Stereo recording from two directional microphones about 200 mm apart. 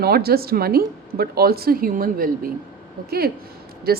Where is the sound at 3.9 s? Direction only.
50° right (ahead or behind).